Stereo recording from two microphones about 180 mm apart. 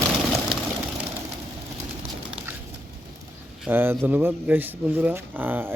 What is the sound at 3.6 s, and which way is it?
Speech, 10° right (ahead or behind).